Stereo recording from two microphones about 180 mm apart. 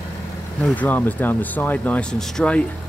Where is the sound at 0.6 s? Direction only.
10° left (ahead or behind).